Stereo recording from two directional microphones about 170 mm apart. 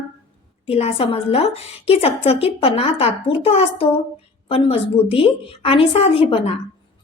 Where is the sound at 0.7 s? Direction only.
35° left (ahead or behind).